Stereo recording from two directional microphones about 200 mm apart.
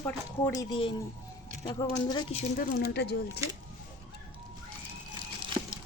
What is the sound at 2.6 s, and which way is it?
Speech, 55° left (ahead or behind).